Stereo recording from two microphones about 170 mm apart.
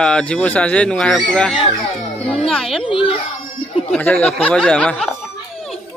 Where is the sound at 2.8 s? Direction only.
30° left (ahead or behind).